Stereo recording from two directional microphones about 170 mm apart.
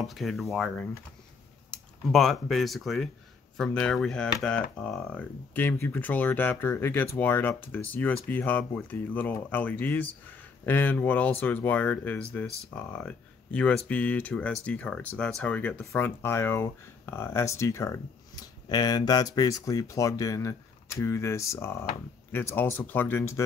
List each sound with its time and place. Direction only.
0.0 s speech: centre (ahead or behind)